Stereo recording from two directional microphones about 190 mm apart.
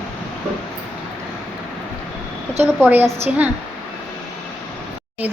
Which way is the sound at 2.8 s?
10° right (ahead or behind).